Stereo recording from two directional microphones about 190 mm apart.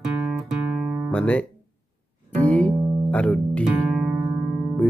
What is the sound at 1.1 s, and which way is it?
Speech, 5° left (ahead or behind).